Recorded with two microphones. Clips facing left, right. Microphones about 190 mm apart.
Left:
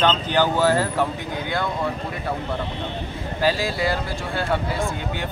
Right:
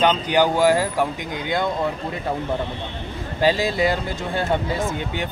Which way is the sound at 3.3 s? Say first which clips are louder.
Right 3 dB; 20° right (ahead or behind).